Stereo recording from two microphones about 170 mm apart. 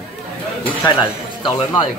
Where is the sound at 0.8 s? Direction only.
25° left (ahead or behind).